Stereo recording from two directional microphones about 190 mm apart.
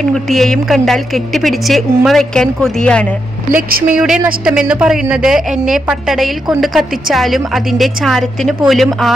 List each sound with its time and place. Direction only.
0.1 s a woman's voice: centre (ahead or behind)
3.5 s a woman's voice: 45° right (ahead or behind)
4.5 s a woman's voice: 5° right (ahead or behind)